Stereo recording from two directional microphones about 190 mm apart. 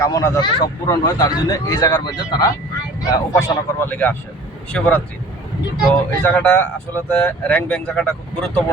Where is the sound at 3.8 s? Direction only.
10° left (ahead or behind).